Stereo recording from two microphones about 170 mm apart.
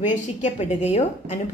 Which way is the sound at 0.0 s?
45° left (ahead or behind).